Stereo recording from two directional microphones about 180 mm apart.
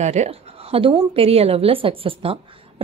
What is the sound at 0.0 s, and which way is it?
A woman's voice, 40° right (ahead or behind).